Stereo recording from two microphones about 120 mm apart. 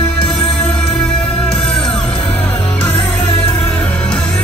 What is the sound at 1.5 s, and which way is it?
Music, 5° left (ahead or behind).